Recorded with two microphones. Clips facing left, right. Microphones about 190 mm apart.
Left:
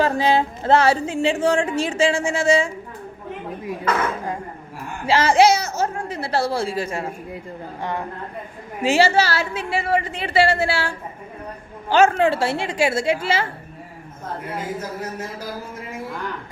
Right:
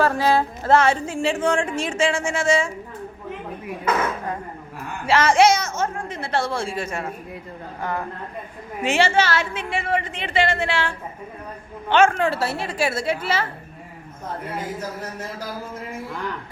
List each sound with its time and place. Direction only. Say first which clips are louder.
0.0 s a woman's voice: left 1 dB; 20° left (ahead or behind)
5.0 s a woman's voice: left 1 dB; 30° left (ahead or behind)
8.8 s a woman's voice: left 2 dB; 35° left (ahead or behind)